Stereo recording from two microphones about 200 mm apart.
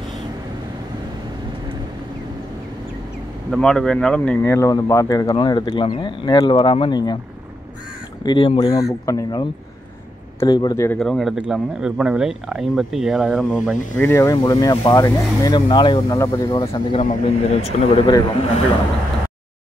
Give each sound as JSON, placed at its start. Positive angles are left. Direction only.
{"t": 3.5, "sound": "speech", "side_deg": 5}
{"t": 8.2, "sound": "speech", "side_deg": 25}
{"t": 11.0, "sound": "speech", "side_deg": 0}
{"t": 16.9, "sound": "speech", "side_deg": 30}